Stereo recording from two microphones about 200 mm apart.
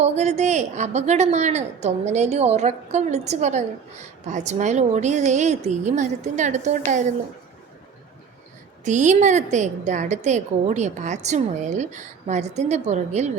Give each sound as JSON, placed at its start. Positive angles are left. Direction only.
{"t": 0.0, "sound": "a woman's voice", "side_deg": -35}
{"t": 8.8, "sound": "a woman's voice", "side_deg": -35}